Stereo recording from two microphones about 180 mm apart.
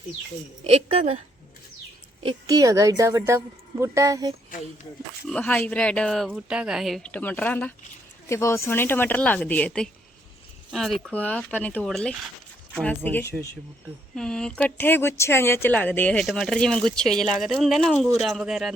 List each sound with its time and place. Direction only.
0.6 s a woman's voice: 35° right (ahead or behind)
2.2 s a woman's voice: 20° right (ahead or behind)
5.3 s speech: 5° left (ahead or behind)